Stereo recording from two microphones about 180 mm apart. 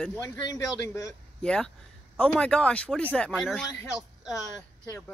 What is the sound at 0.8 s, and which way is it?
Speech, 20° left (ahead or behind).